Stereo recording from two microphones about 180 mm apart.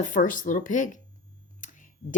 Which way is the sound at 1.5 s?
45° left (ahead or behind).